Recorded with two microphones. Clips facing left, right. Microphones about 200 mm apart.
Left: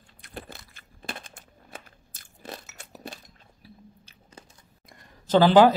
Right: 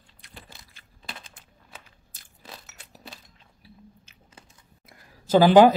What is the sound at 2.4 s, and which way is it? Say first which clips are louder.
Crunch: left 6 dB; 50° left (ahead or behind).